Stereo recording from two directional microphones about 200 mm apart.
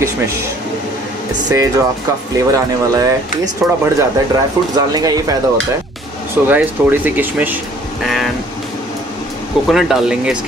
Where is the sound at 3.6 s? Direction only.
15° right (ahead or behind).